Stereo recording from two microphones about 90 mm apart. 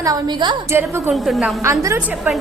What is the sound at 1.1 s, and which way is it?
Speech, centre (ahead or behind).